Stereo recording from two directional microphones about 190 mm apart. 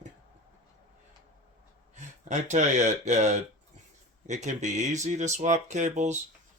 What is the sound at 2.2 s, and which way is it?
Speech, 40° right (ahead or behind).